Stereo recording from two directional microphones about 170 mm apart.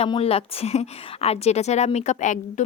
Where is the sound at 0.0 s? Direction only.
35° left (ahead or behind).